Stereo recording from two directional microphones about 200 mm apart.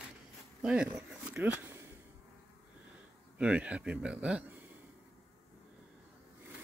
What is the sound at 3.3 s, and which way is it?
Speech, 5° right (ahead or behind).